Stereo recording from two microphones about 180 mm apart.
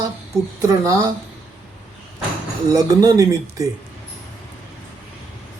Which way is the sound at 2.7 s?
20° right (ahead or behind).